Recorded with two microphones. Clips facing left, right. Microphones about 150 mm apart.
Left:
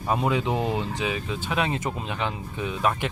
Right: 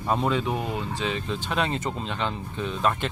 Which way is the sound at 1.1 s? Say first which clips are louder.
Even; 5° left (ahead or behind).